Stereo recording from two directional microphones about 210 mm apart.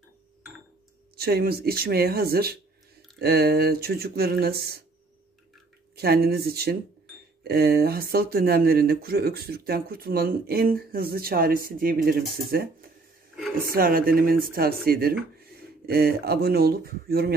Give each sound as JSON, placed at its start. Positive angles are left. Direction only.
{"t": 1.1, "sound": "speech", "side_deg": -50}
{"t": 5.9, "sound": "speech", "side_deg": -50}